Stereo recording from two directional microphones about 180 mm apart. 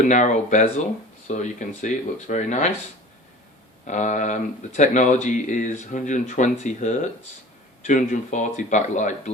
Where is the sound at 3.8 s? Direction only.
45° left (ahead or behind).